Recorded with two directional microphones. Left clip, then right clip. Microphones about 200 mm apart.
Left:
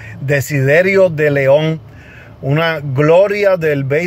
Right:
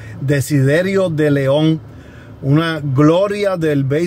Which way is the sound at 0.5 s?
15° left (ahead or behind).